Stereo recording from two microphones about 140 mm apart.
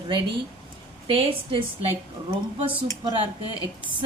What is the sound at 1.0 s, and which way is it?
Speech, 40° right (ahead or behind).